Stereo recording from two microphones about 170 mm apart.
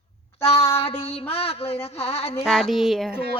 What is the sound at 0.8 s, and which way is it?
A man's voice, 35° left (ahead or behind).